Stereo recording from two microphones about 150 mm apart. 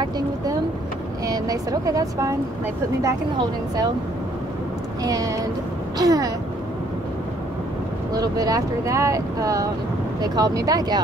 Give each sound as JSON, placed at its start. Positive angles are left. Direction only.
{"t": 1.2, "sound": "speech", "side_deg": -25}
{"t": 3.3, "sound": "speech", "side_deg": -25}
{"t": 5.0, "sound": "speech", "side_deg": -20}
{"t": 8.1, "sound": "speech", "side_deg": -25}